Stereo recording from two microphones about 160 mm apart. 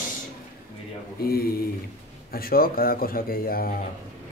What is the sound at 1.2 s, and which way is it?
Speech, 70° left (ahead or behind).